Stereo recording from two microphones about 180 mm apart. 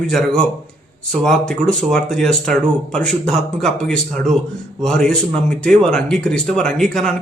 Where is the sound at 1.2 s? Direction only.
5° left (ahead or behind).